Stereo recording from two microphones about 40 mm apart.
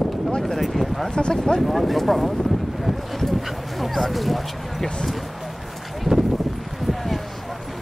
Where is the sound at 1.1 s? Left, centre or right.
Centre.